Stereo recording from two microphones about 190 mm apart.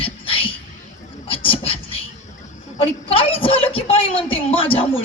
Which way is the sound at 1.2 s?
30° left (ahead or behind).